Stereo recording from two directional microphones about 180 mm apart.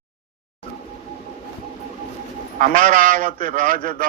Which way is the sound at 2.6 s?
45° right (ahead or behind).